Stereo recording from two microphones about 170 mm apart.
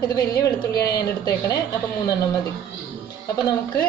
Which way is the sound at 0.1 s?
20° left (ahead or behind).